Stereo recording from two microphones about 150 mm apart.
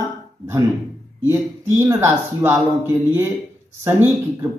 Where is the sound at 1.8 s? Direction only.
20° right (ahead or behind).